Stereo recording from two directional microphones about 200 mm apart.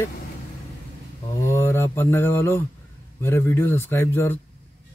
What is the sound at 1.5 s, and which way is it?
Speech, 10° left (ahead or behind).